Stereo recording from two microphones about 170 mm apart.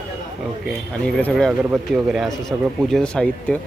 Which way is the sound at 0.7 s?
5° left (ahead or behind).